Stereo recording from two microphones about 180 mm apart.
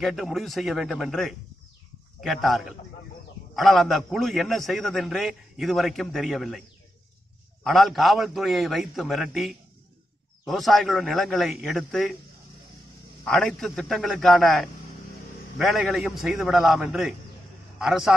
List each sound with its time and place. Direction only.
0.0 s a man's voice: centre (ahead or behind)
7.6 s a man's voice: centre (ahead or behind)
13.2 s a man's voice: 5° left (ahead or behind)